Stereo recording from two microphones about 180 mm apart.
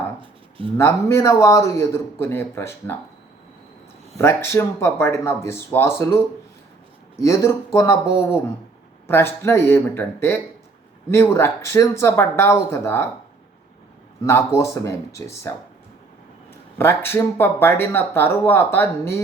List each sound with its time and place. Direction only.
0.2 s a sound: 30° right (ahead or behind)
0.8 s speech: 15° left (ahead or behind)
4.2 s speech: 15° left (ahead or behind)
14.3 s speech: 15° left (ahead or behind)
16.7 s speech: 10° left (ahead or behind)